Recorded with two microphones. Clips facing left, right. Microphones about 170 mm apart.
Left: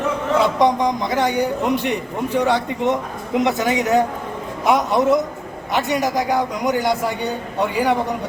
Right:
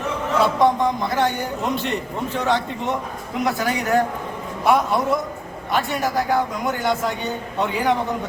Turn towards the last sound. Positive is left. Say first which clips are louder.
# left 2 dB
turn(degrees=10)  # may be behind; listen again after turning